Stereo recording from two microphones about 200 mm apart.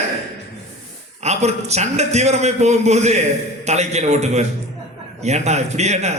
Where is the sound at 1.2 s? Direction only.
35° right (ahead or behind).